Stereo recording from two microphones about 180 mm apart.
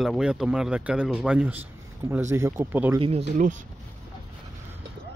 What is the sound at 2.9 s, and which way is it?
Speech, 30° right (ahead or behind).